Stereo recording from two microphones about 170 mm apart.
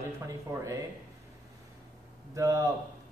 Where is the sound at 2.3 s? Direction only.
20° right (ahead or behind).